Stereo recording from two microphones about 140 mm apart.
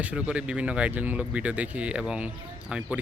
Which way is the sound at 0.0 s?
10° right (ahead or behind).